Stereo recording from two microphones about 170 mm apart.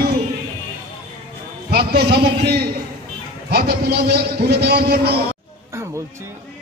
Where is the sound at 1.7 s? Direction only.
65° right (ahead or behind).